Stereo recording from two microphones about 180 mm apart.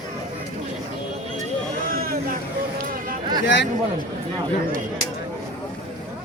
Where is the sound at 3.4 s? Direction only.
80° left.